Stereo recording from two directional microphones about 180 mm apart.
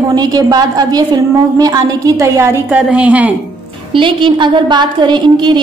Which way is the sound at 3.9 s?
25° right (ahead or behind).